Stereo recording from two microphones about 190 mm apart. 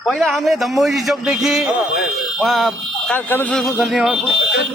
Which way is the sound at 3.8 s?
Centre (ahead or behind).